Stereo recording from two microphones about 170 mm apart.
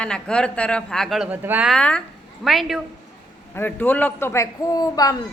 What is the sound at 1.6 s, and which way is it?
A woman's voice, 5° left (ahead or behind).